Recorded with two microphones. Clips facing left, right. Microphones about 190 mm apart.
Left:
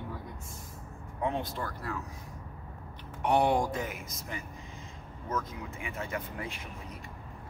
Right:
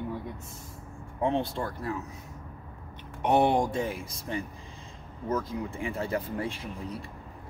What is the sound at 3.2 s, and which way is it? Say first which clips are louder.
Speech: right 3 dB; 25° right (ahead or behind).